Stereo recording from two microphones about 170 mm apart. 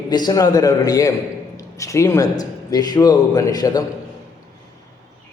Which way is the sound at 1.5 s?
20° left (ahead or behind).